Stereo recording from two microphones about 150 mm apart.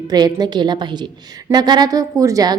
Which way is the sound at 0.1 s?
25° right (ahead or behind).